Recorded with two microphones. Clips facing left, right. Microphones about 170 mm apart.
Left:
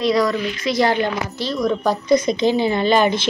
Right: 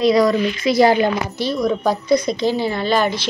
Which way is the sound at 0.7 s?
10° right (ahead or behind).